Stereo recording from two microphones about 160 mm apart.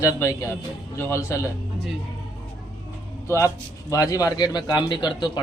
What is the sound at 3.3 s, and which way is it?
A man's voice, 20° left (ahead or behind).